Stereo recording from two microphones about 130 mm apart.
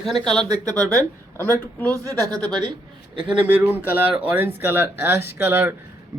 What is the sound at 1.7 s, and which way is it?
Speech, 15° left (ahead or behind).